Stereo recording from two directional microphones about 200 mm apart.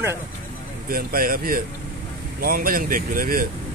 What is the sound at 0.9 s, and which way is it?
Speech, 45° right (ahead or behind).